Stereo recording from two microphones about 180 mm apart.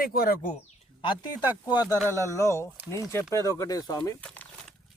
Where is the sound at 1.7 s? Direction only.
20° left (ahead or behind).